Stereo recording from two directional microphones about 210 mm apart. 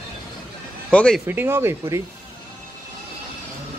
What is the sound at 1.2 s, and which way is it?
Speech, 10° right (ahead or behind).